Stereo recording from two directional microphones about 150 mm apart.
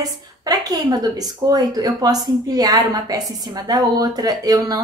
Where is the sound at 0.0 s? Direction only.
25° right (ahead or behind).